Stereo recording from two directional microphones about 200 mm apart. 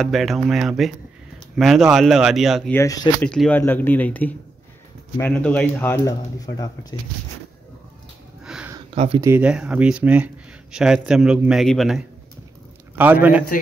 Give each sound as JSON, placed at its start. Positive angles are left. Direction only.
{"t": 0.0, "sound": "speech", "side_deg": 0}
{"t": 2.7, "sound": "speech", "side_deg": 15}
{"t": 3.3, "sound": "speech", "side_deg": 5}
{"t": 8.5, "sound": "a sound", "side_deg": -5}
{"t": 8.9, "sound": "speech", "side_deg": -30}
{"t": 9.2, "sound": "a man's voice", "side_deg": -10}